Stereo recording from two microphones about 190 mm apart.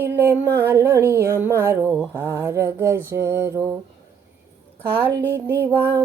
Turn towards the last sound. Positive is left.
turn(degrees=-15)  # may be behind; listen again after turning